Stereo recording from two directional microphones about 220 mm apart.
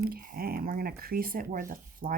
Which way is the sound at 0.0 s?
40° right (ahead or behind).